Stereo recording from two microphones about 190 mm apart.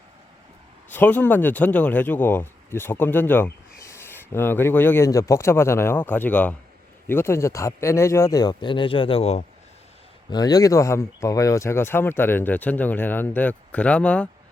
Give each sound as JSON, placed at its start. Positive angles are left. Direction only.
{"t": 0.9, "sound": "speech", "side_deg": 10}
{"t": 10.2, "sound": "speech", "side_deg": 20}